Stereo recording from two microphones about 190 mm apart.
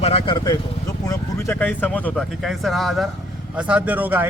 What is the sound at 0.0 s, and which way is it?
A man's voice, 30° left (ahead or behind).